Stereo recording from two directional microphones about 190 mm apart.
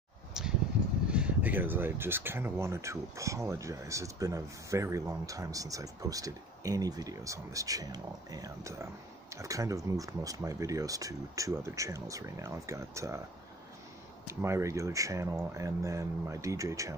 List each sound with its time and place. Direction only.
0.3 s a sound: 5° right (ahead or behind)
1.1 s speech: 5° right (ahead or behind)
14.2 s speech: 15° right (ahead or behind)